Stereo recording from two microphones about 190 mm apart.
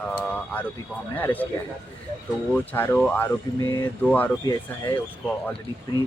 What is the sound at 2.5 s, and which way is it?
Speech, 10° left (ahead or behind).